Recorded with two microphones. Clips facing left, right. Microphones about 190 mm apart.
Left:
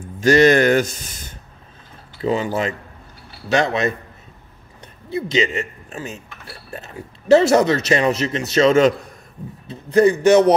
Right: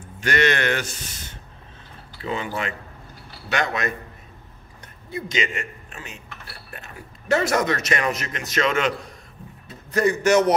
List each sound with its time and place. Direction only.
0.2 s speech: 35° left (ahead or behind)
2.2 s speech: 35° left (ahead or behind)
5.1 s a man's voice: 25° left (ahead or behind)